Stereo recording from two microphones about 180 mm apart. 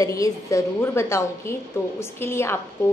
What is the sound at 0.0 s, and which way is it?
Speech, 20° left (ahead or behind).